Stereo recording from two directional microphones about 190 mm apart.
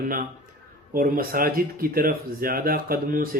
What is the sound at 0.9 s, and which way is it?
Speech, 50° right (ahead or behind).